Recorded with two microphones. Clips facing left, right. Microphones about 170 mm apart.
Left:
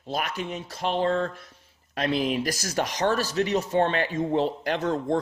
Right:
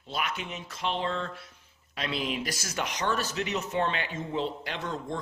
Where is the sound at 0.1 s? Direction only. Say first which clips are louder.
Left 4 dB; 40° left (ahead or behind).